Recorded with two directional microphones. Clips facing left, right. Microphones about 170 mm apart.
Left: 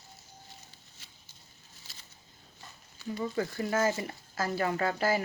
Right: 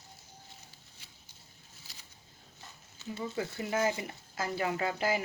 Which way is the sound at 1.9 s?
15° right (ahead or behind).